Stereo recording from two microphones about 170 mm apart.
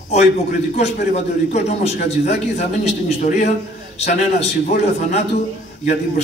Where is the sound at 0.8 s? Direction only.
40° left (ahead or behind).